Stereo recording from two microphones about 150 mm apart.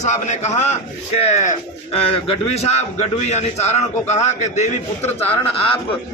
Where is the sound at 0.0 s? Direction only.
50° left (ahead or behind).